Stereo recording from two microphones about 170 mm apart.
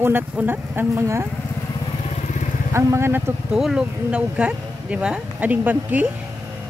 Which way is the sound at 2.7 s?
15° right (ahead or behind).